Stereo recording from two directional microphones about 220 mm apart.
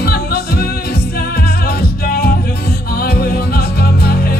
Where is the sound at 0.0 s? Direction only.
45° left (ahead or behind).